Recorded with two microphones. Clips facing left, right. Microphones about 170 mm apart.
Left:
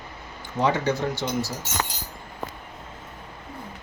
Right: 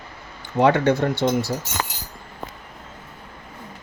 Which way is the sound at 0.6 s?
60° right (ahead or behind).